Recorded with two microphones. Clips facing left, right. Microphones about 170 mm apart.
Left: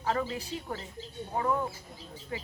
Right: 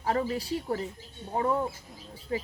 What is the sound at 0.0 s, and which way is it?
Speech, 30° right (ahead or behind).